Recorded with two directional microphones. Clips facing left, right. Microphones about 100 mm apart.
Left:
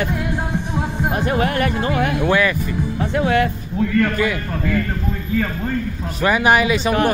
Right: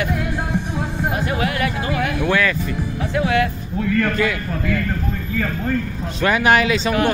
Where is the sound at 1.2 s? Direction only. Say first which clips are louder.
Left 5 dB; 40° left (ahead or behind).